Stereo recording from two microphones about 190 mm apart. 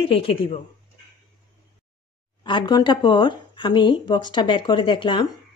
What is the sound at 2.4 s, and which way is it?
Speech, 25° left (ahead or behind).